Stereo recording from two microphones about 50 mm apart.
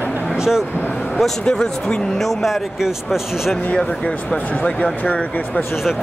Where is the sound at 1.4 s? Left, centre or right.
Centre.